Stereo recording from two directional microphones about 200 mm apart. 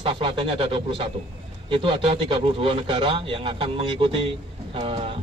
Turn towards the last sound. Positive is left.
turn(degrees=-30)  # may be behind; listen again after turning